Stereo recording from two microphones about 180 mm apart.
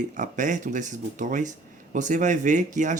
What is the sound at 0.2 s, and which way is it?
Speech, 45° right (ahead or behind).